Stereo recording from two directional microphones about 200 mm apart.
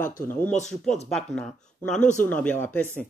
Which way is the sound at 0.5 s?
35° left (ahead or behind).